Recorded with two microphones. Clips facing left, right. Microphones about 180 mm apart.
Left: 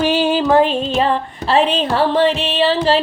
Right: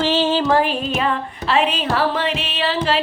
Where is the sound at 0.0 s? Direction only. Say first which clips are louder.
Left 2 dB; 15° left (ahead or behind).